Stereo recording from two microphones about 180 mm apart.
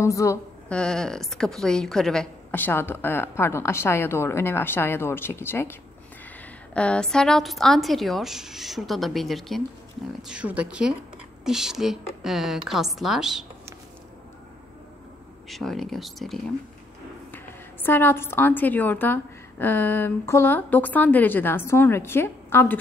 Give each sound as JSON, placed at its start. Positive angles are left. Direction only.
{"t": 0.0, "sound": "a woman's voice", "side_deg": 15}
{"t": 0.7, "sound": "a woman's voice", "side_deg": 5}
{"t": 15.4, "sound": "a woman's voice", "side_deg": 0}
{"t": 17.8, "sound": "a woman's voice", "side_deg": 10}